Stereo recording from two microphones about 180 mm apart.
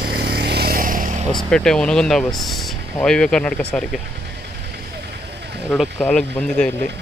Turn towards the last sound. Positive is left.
turn(degrees=5)  # may be behind; listen again after turning